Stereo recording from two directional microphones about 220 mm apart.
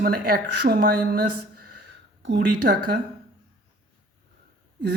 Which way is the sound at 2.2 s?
55° right (ahead or behind).